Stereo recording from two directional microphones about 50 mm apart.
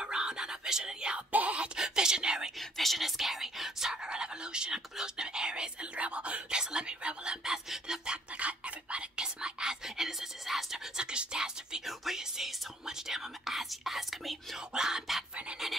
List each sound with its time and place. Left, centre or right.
0.0 s music: centre
1.3 s a sound: right
1.8 s speech: centre
2.8 s speech: centre
8.4 s speech: right; by 10.8 s centre
11.0 s speech: centre
14.7 s speech: centre